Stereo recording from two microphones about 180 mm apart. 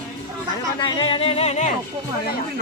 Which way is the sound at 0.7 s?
25° left (ahead or behind).